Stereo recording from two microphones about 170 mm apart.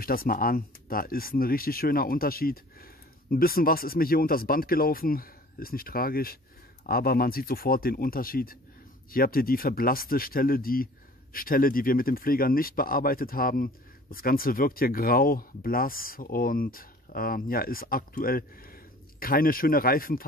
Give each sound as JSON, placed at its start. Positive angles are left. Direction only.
{"t": 0.0, "sound": "speech", "side_deg": 60}